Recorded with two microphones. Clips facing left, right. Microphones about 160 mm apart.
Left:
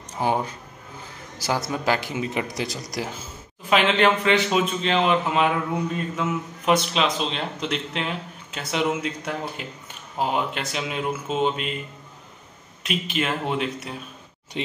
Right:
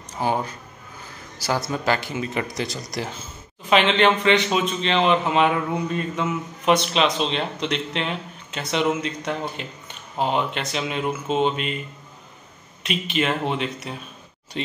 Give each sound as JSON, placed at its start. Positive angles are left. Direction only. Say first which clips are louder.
{"t": 0.2, "sound": "speech", "louder": "even", "side_deg": 15}
{"t": 1.9, "sound": "a man's voice", "louder": "even", "side_deg": 15}
{"t": 13.1, "sound": "a man's voice", "louder": "right 3 dB", "side_deg": 5}